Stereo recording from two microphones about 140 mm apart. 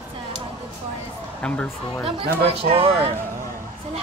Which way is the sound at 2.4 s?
45° right (ahead or behind).